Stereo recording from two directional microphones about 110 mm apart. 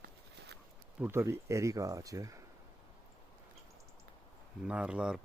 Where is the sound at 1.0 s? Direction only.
20° right (ahead or behind).